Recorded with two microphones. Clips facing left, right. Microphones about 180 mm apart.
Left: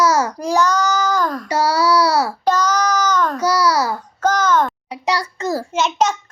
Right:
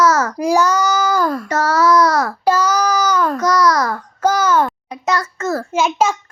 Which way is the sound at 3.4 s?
10° left (ahead or behind).